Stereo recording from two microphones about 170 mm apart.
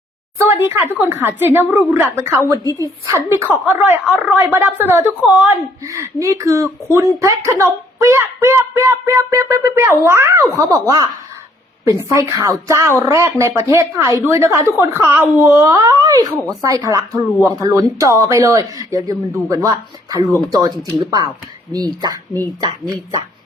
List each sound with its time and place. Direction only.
0.3 s speech: 15° right (ahead or behind)